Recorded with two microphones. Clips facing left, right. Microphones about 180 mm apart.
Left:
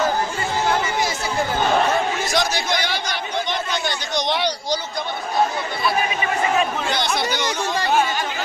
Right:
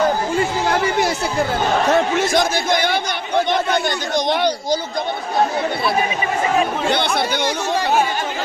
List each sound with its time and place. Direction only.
2.3 s speech: 50° right (ahead or behind)
6.9 s speech: 60° right (ahead or behind)